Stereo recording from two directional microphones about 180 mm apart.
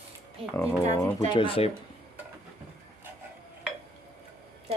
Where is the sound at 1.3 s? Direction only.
30° left (ahead or behind).